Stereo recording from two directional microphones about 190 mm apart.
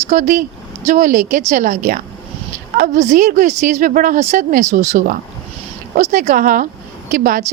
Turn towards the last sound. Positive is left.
turn(degrees=-45)  # may be behind; listen again after turning